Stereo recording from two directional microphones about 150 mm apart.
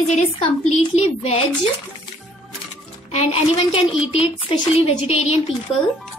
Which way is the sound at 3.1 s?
45° left (ahead or behind).